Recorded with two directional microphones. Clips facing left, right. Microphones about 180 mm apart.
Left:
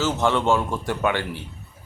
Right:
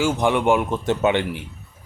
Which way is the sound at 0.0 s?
15° right (ahead or behind).